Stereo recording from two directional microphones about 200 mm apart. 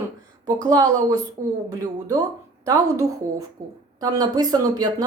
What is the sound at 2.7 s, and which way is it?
Speech, 20° right (ahead or behind).